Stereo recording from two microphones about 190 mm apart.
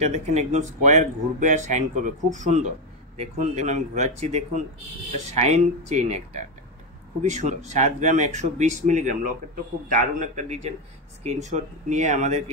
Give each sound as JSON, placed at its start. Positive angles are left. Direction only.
{"t": 0.0, "sound": "speech", "side_deg": -35}